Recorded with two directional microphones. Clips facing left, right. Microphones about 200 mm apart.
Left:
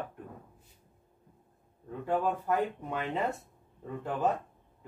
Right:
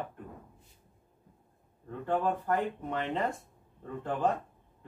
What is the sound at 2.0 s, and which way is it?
Speech, 10° left (ahead or behind).